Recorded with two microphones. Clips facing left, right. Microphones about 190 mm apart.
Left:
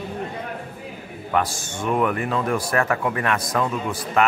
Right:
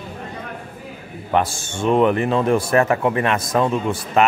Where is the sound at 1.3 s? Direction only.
25° right (ahead or behind).